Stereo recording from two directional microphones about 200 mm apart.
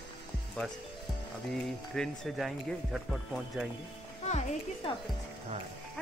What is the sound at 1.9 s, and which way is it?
Speech, 5° left (ahead or behind).